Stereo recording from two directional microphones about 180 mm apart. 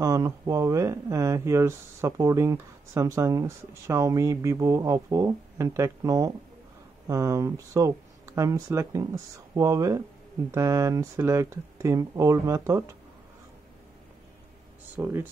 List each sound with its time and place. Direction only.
0.0 s speech: 20° right (ahead or behind)
15.0 s speech: 10° right (ahead or behind)